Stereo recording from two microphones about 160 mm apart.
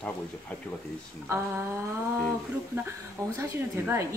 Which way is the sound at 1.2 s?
15° right (ahead or behind).